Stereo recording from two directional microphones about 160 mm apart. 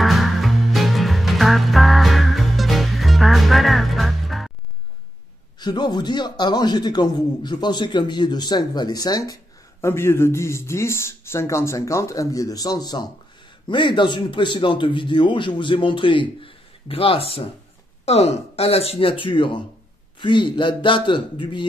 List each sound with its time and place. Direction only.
0.0 s music: centre (ahead or behind)
5.6 s a man's voice: 25° left (ahead or behind)